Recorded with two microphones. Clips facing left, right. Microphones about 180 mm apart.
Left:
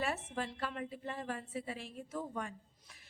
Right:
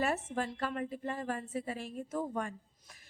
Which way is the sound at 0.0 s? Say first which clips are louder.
Right 4 dB; 45° right (ahead or behind).